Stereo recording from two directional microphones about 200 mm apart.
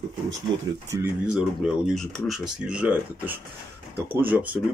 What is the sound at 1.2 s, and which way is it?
Speech, 5° right (ahead or behind).